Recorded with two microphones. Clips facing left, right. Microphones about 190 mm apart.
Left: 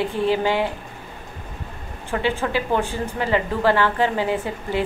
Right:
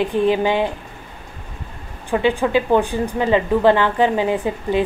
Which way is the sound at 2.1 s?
15° right (ahead or behind).